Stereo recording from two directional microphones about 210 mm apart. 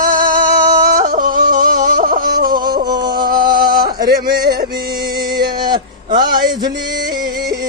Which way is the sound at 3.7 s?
45° right (ahead or behind).